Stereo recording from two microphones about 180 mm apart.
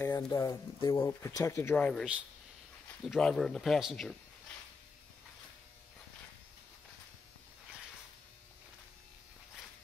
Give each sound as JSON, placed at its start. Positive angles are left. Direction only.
{"t": 0.0, "sound": "speech", "side_deg": 20}